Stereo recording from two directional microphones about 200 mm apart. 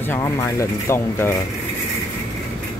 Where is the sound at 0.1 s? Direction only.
15° left (ahead or behind).